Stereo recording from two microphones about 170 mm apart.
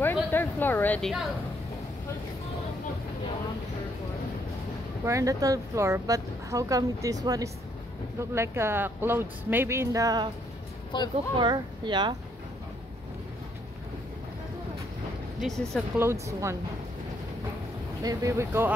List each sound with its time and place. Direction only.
0.0 s a sound: 10° left (ahead or behind)
5.0 s a woman's voice: 20° right (ahead or behind)
10.9 s speech: 25° left (ahead or behind)
11.3 s a woman's voice: 25° right (ahead or behind)
15.4 s a woman's voice: centre (ahead or behind)
16.0 s speech: 15° right (ahead or behind)
18.0 s speech: 15° right (ahead or behind)